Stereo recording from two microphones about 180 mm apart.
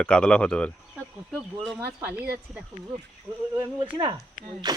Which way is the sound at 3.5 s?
25° right (ahead or behind).